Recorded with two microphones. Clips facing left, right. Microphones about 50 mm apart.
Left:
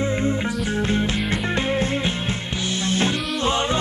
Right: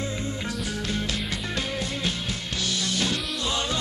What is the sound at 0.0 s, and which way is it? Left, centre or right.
Music, left.